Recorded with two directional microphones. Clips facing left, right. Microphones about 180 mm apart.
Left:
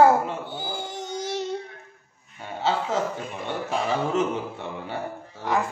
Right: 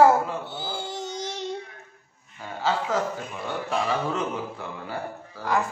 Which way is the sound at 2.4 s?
25° left (ahead or behind).